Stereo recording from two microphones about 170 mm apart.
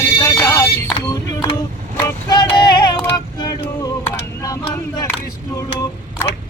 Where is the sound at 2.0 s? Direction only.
15° left (ahead or behind).